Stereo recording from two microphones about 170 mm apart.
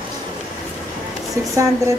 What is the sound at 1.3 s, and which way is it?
Speech, 20° right (ahead or behind).